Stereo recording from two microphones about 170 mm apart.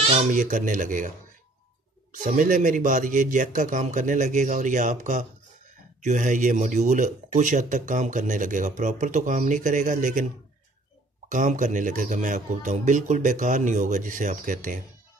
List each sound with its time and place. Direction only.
0.2 s speech: 50° right (ahead or behind)
2.1 s speech: 50° right (ahead or behind)
11.2 s speech: 50° right (ahead or behind)